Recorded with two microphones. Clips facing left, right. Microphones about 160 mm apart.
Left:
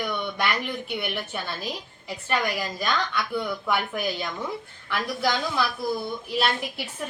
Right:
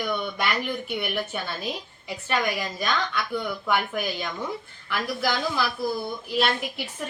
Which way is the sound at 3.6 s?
Centre (ahead or behind).